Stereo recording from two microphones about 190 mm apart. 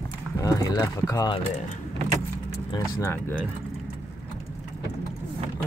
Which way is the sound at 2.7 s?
20° left (ahead or behind).